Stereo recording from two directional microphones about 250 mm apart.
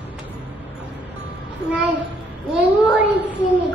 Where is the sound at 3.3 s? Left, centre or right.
Centre.